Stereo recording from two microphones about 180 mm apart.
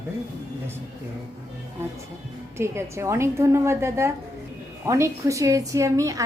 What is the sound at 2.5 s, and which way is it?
A woman's voice, 15° right (ahead or behind).